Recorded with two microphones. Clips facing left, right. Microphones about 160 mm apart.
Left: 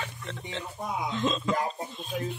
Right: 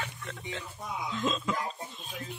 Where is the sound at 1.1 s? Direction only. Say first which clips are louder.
Left 2 dB; 5° right (ahead or behind).